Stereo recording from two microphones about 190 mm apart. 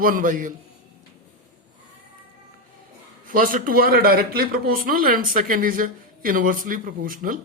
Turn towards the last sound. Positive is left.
turn(degrees=-50)  # may be behind; listen again after turning